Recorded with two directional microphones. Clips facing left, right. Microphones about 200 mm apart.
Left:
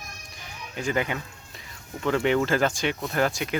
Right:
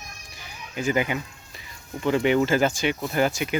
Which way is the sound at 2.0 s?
5° right (ahead or behind).